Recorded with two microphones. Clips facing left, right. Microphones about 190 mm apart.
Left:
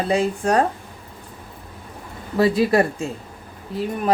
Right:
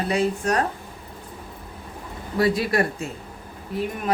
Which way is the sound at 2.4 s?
30° left (ahead or behind).